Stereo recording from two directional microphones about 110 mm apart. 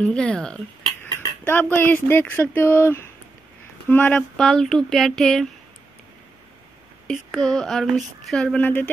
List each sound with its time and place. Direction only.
0.0 s speech: 10° left (ahead or behind)
4.4 s speech: 5° left (ahead or behind)
7.1 s speech: centre (ahead or behind)